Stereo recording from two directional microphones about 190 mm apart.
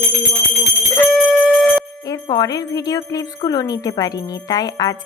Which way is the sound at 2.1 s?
20° left (ahead or behind).